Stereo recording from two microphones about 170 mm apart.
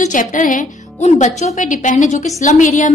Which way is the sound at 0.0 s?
50° left (ahead or behind).